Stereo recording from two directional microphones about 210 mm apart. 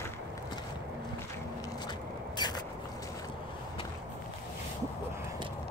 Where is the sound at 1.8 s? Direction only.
20° left (ahead or behind).